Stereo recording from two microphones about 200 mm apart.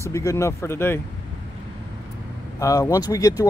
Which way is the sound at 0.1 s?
15° left (ahead or behind).